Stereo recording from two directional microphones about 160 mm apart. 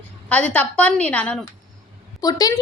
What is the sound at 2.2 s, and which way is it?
Speech, 25° left (ahead or behind).